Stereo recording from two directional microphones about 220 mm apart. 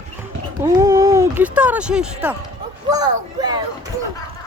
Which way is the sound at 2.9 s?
20° right (ahead or behind).